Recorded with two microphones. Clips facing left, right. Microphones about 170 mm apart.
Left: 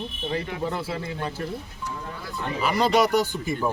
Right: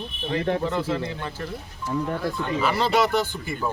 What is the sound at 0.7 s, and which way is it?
Speech, 10° left (ahead or behind).